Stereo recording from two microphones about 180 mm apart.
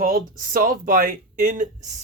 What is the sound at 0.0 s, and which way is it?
Speech, 50° right (ahead or behind).